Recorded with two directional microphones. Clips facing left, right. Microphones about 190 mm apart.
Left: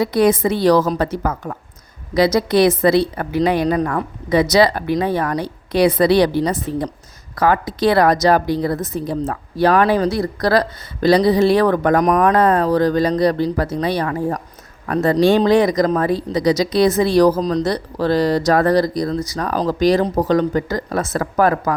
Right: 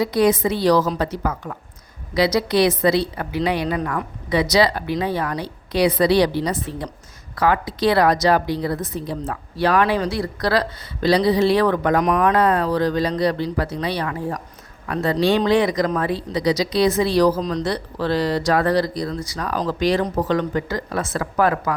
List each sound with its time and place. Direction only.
0.0 s a woman's voice: 55° left (ahead or behind); by 21.8 s 40° left (ahead or behind)